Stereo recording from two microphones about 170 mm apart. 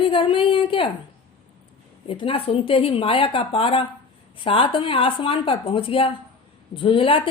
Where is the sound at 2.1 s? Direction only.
35° left (ahead or behind).